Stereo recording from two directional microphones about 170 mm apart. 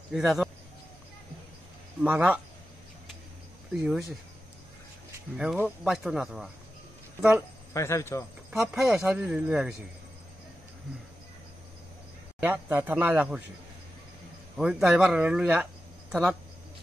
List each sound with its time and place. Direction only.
0.1 s speech: 5° right (ahead or behind)
2.0 s speech: 10° right (ahead or behind)
3.7 s speech: 5° right (ahead or behind)
5.4 s speech: 5° right (ahead or behind)
7.7 s speech: 15° left (ahead or behind)
8.5 s speech: 5° right (ahead or behind)
12.4 s speech: 10° right (ahead or behind)
14.6 s speech: 5° right (ahead or behind)